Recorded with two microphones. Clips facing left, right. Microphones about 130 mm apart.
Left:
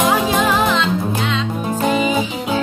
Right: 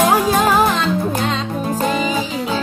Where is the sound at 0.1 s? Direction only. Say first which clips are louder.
Right 2 dB; 40° right (ahead or behind).